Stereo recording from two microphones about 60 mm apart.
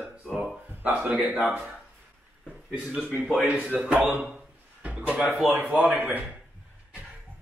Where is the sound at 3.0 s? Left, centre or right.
Right.